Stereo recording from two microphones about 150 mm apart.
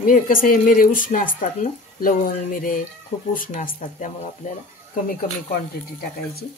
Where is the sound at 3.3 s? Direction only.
60° left (ahead or behind).